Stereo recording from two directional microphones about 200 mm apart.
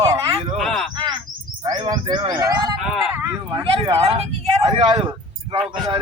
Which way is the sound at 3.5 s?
25° right (ahead or behind).